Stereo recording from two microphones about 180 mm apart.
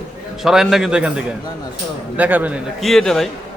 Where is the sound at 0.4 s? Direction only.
Centre (ahead or behind).